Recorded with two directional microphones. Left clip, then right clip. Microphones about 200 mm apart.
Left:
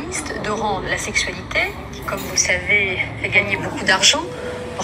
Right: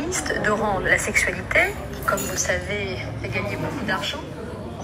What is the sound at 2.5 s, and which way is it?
Speech, 25° right (ahead or behind).